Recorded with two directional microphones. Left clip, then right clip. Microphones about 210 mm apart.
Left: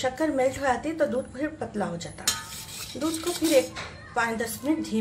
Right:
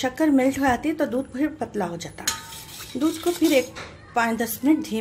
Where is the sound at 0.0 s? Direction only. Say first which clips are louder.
Right 4 dB; 35° right (ahead or behind).